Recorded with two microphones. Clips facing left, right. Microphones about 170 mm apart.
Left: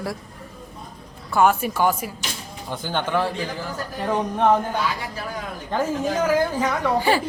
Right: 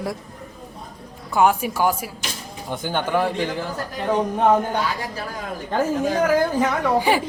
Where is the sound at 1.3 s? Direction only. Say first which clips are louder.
Even; 15° right (ahead or behind).